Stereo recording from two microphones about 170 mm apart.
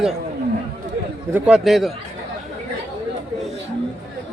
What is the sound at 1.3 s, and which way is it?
Speech, 5° right (ahead or behind).